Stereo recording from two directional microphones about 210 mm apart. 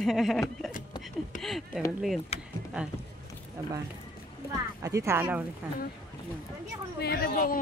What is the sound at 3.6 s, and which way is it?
Speech, 15° right (ahead or behind).